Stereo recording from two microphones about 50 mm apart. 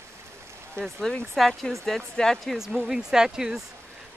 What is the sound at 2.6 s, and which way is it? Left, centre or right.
Speech, centre.